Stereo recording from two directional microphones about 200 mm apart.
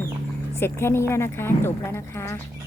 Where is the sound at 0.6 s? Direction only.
15° left (ahead or behind).